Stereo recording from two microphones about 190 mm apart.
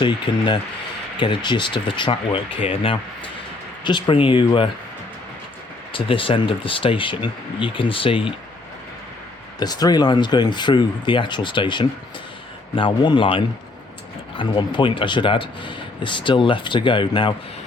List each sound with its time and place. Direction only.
0.0 s speech: 25° left (ahead or behind)
5.9 s speech: 30° left (ahead or behind)
9.6 s speech: 20° left (ahead or behind)